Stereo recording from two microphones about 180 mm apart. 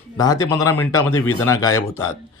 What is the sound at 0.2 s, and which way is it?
Speech, 20° left (ahead or behind).